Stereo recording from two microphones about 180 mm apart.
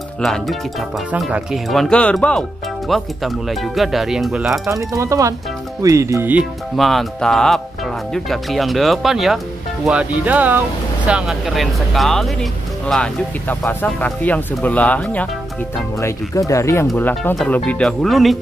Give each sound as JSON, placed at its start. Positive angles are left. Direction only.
{"t": 0.2, "sound": "speech", "side_deg": 0}
{"t": 4.6, "sound": "speech", "side_deg": -15}
{"t": 6.8, "sound": "speech", "side_deg": 0}